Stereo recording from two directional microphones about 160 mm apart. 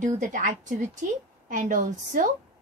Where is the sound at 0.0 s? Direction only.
55° right (ahead or behind).